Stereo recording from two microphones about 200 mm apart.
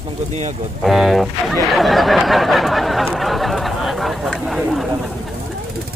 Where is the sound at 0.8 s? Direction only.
Centre (ahead or behind).